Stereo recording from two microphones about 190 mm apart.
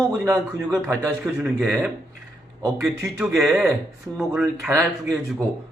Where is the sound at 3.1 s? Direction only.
Centre (ahead or behind).